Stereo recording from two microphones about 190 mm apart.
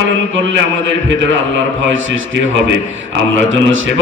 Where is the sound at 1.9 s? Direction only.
80° right.